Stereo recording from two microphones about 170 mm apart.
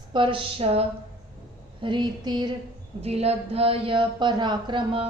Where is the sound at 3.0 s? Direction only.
35° right (ahead or behind).